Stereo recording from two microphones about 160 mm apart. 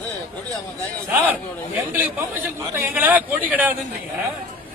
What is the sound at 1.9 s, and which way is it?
A man's voice, 10° right (ahead or behind).